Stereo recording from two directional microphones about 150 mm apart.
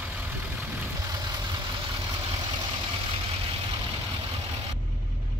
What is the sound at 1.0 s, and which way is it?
Vehicle, 25° right (ahead or behind).